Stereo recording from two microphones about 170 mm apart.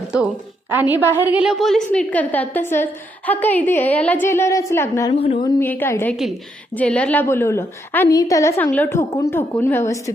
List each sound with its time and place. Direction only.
0.7 s a woman's voice: 10° right (ahead or behind); by 5.1 s 15° left (ahead or behind)
5.2 s a woman's voice: 35° left (ahead or behind)
5.5 s a woman's voice: 10° left (ahead or behind)